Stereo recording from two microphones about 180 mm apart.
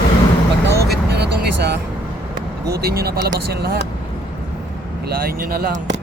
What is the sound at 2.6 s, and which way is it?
Speech, 60° right (ahead or behind).